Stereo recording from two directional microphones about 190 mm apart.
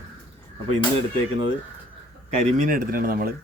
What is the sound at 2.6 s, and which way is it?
Speech, 45° right (ahead or behind).